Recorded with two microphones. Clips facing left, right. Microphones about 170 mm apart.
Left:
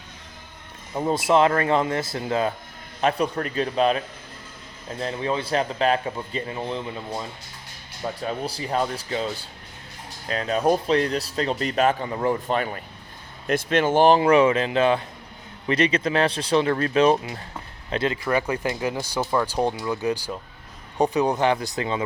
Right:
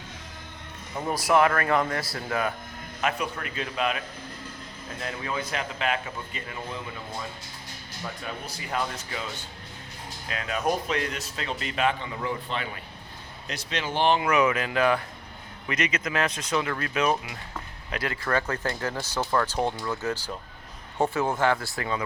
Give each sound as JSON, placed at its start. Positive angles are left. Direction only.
{"t": 0.9, "sound": "speech", "side_deg": 25}
{"t": 8.0, "sound": "speech", "side_deg": 35}
{"t": 18.2, "sound": "speech", "side_deg": 15}